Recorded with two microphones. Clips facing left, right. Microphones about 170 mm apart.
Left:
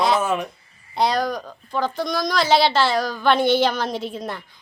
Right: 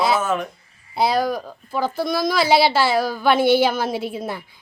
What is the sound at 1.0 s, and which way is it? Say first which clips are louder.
A woman's voice: right 1 dB; 5° right (ahead or behind).